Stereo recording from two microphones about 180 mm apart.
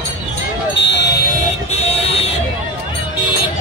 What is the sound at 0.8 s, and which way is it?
Vehicle, 75° left (ahead or behind).